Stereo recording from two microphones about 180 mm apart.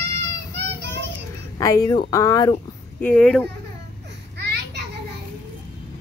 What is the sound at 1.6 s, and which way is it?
Speech, 20° left (ahead or behind).